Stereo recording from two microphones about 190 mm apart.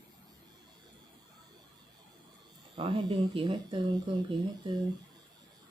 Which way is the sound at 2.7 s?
30° right (ahead or behind).